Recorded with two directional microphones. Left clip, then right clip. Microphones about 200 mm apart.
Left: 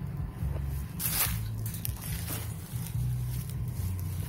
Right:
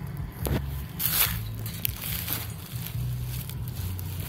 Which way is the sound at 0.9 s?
35° right (ahead or behind).